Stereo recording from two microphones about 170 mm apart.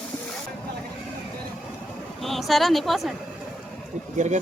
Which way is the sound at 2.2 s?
Centre (ahead or behind).